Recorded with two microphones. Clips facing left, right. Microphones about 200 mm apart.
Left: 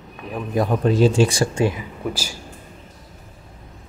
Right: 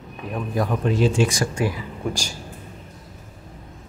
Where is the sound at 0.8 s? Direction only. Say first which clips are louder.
Left 4 dB; 35° left (ahead or behind).